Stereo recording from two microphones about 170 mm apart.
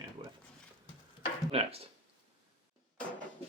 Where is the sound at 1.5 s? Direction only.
35° right (ahead or behind).